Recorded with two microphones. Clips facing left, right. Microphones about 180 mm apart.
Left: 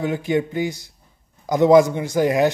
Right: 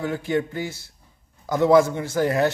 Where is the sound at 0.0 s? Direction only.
15° left (ahead or behind).